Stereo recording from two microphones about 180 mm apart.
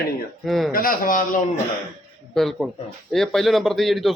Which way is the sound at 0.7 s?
50° left (ahead or behind).